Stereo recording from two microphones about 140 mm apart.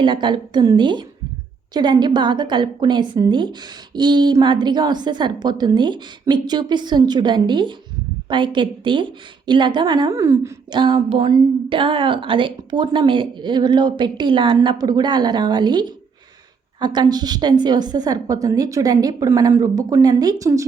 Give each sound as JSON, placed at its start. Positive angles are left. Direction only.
{"t": 0.0, "sound": "a woman's voice", "side_deg": -35}
{"t": 10.7, "sound": "a woman's voice", "side_deg": -35}